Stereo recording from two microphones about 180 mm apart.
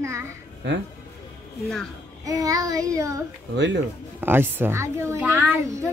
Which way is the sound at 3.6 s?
90° right.